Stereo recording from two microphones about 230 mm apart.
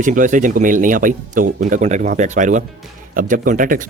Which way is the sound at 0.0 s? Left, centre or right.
Right.